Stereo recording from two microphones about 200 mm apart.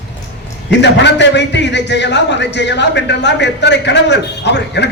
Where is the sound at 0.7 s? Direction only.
60° left (ahead or behind).